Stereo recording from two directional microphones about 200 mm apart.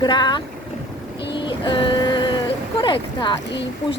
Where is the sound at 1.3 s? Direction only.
25° left (ahead or behind).